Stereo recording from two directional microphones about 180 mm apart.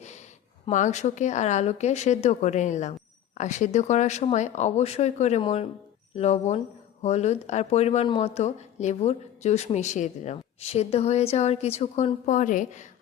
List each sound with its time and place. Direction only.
0.0 s speech: 40° left (ahead or behind)